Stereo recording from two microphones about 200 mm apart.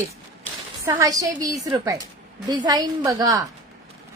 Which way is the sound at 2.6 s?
20° right (ahead or behind).